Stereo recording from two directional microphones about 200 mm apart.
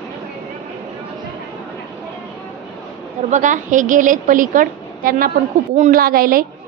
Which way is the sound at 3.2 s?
40° right (ahead or behind).